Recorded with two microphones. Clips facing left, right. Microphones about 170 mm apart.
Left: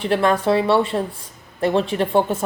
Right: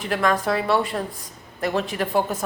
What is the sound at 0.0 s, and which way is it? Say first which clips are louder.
Speech: left 4 dB; 30° left (ahead or behind).